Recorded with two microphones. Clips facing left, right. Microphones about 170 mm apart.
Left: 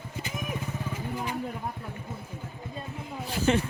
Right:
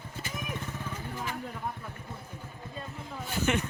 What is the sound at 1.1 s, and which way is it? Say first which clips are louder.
Vehicle: left 4 dB; 15° left (ahead or behind).